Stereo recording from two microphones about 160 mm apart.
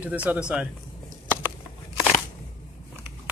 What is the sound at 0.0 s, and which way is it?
Speech, 10° right (ahead or behind).